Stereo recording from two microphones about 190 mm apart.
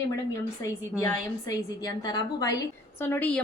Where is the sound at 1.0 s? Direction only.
20° left (ahead or behind).